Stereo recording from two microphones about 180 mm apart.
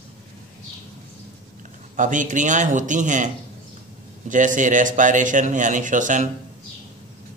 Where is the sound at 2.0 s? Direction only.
45° right (ahead or behind).